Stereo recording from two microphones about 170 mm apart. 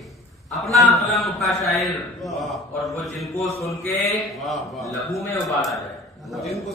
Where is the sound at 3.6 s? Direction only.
15° left (ahead or behind).